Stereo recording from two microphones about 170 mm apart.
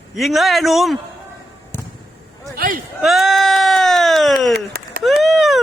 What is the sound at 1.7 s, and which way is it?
Basketball bounce, 15° left (ahead or behind).